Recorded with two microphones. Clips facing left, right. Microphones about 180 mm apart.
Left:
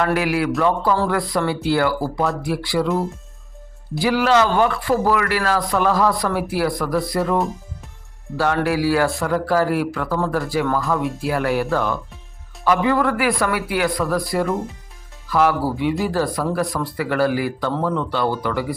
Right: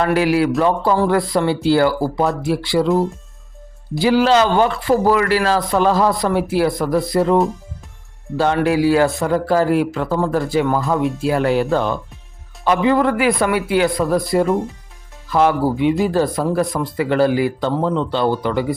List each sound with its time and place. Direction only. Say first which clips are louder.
0.0 s speech: right 4 dB; 30° right (ahead or behind)
4.0 s speech: right 3 dB; 30° right (ahead or behind)
8.4 s speech: right 3 dB; 25° right (ahead or behind)